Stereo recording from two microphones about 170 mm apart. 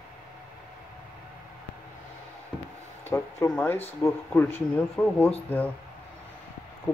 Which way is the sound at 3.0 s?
15° left (ahead or behind).